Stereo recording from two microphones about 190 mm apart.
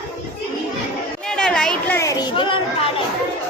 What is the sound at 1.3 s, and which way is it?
Chatter, 5° left (ahead or behind).